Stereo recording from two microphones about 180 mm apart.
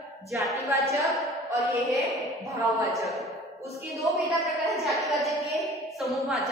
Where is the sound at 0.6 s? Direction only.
15° right (ahead or behind).